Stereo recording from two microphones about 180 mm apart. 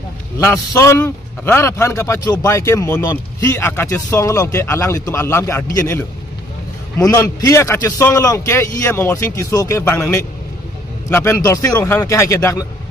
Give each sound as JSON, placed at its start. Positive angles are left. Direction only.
{"t": 0.4, "sound": "a man's voice", "side_deg": 15}